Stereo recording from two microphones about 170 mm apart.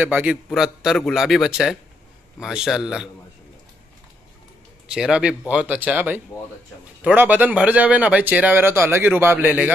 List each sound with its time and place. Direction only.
0.0 s a man's voice: 10° right (ahead or behind)
4.9 s a man's voice: 5° right (ahead or behind)